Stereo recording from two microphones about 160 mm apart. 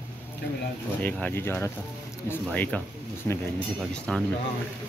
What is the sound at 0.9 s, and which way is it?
Speech, 10° left (ahead or behind).